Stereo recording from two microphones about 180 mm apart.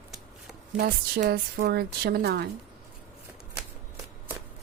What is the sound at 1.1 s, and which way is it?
Speech, 60° right (ahead or behind).